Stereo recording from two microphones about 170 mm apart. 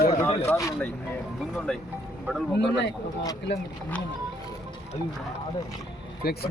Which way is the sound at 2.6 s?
90° left.